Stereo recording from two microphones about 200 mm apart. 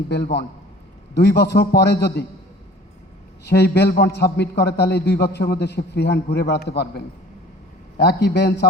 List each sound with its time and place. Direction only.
1.1 s a man's voice: 60° left (ahead or behind)
3.4 s a man's voice: 55° left (ahead or behind)